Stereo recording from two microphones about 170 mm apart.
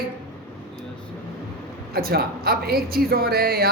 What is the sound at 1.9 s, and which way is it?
A man's voice, 65° right (ahead or behind).